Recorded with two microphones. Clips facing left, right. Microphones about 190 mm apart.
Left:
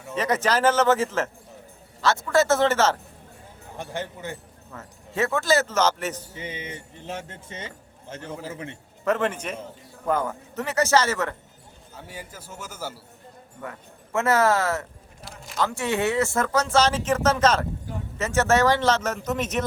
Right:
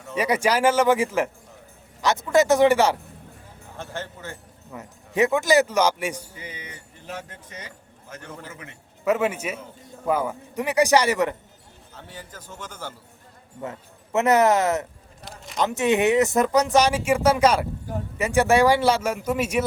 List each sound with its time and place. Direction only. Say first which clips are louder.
0.1 s speech: right 2 dB; 10° right (ahead or behind)
3.8 s a man's voice: left 2 dB; 15° left (ahead or behind)
4.7 s speech: right 4 dB; 15° right (ahead or behind)
6.3 s a man's voice: left 5 dB; 25° left (ahead or behind)
9.0 s speech: right 2 dB; 10° right (ahead or behind)
11.9 s a man's voice: left 1 dB; 10° left (ahead or behind)
13.6 s a man's voice: right 4 dB; 20° right (ahead or behind)